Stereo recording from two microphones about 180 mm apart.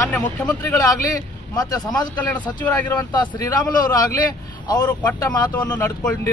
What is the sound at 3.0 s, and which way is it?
Speech, 20° left (ahead or behind).